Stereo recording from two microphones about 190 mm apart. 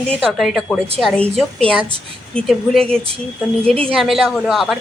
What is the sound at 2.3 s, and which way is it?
A woman's voice, centre (ahead or behind).